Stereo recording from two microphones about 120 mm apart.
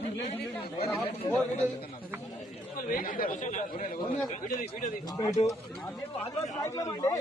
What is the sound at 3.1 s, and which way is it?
Speech, 90° left.